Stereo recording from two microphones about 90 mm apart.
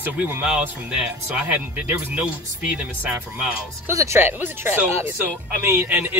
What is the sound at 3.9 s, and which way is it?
Speech, 35° right (ahead or behind).